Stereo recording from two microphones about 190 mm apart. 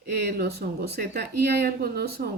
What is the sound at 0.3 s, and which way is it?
Speech, 55° right (ahead or behind).